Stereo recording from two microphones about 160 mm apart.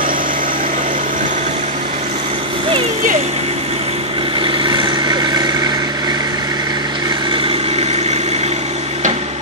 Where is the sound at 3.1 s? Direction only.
40° right (ahead or behind).